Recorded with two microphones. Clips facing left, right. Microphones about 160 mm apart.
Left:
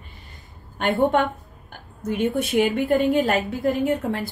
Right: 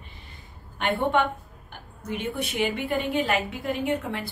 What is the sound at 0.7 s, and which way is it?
Speech, 45° left (ahead or behind).